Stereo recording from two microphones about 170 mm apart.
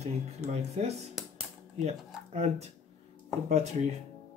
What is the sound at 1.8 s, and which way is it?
Speech, 40° right (ahead or behind).